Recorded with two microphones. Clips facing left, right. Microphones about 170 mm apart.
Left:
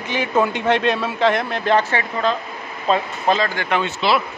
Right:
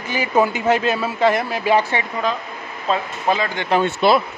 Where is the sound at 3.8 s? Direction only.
55° right (ahead or behind).